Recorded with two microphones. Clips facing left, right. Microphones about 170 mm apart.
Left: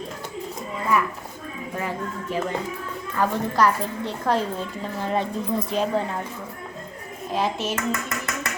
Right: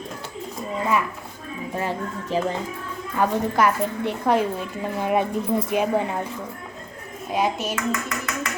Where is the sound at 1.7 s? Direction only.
25° right (ahead or behind).